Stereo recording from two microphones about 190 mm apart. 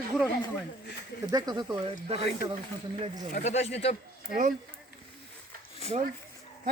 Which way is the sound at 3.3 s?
35° left (ahead or behind).